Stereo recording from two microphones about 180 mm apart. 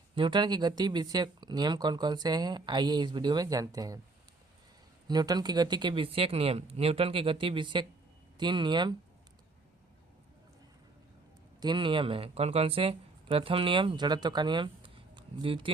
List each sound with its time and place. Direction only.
0.2 s speech: 25° right (ahead or behind)
5.0 s speech: 20° right (ahead or behind)
11.6 s speech: 25° right (ahead or behind)